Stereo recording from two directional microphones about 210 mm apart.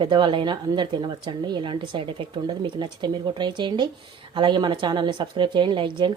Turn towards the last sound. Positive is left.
turn(degrees=-20)  # may be behind; listen again after turning